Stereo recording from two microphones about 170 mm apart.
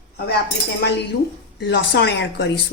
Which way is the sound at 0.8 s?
80° left.